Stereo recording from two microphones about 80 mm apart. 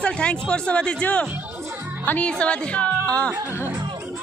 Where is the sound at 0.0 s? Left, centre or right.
Centre.